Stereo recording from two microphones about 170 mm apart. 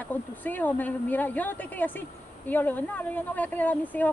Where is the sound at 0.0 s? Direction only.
10° left (ahead or behind).